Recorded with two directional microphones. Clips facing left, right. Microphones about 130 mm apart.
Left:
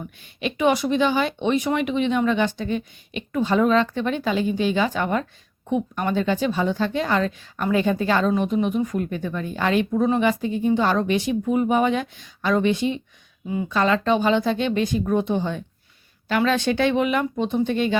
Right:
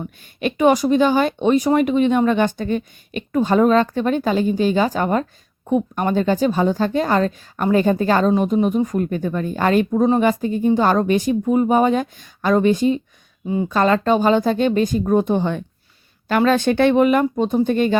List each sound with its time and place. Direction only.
0.3 s a woman's voice: 45° right (ahead or behind)
16.3 s speech: 45° right (ahead or behind)